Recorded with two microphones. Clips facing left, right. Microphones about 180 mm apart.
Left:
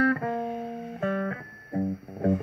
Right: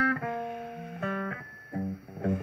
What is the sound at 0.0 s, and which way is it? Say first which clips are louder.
Music: left 5 dB; 40° left (ahead or behind).